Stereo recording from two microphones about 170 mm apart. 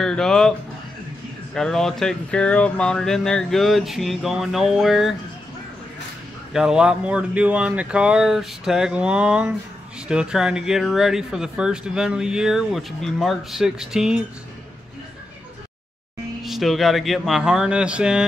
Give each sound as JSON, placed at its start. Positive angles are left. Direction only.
{"t": 0.0, "sound": "speech", "side_deg": 5}
{"t": 6.5, "sound": "speech", "side_deg": -5}
{"t": 16.4, "sound": "speech", "side_deg": 0}